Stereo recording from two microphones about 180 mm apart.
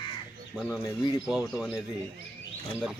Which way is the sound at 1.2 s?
5° right (ahead or behind).